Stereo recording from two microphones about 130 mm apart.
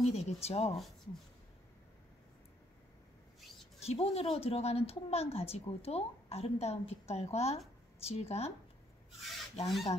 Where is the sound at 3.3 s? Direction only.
Centre (ahead or behind).